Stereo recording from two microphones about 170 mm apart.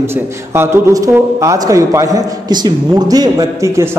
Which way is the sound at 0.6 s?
20° right (ahead or behind).